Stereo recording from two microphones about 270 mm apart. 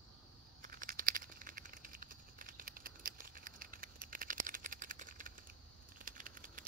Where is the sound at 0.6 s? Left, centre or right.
Right.